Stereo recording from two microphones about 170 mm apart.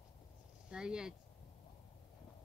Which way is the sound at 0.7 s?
5° right (ahead or behind).